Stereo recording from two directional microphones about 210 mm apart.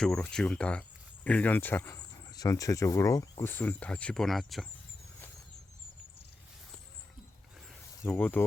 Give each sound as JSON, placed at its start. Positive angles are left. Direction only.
{"t": 0.0, "sound": "speech", "side_deg": 5}
{"t": 8.0, "sound": "speech", "side_deg": 10}